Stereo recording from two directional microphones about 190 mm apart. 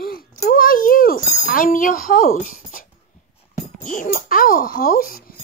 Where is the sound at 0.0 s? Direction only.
50° left (ahead or behind).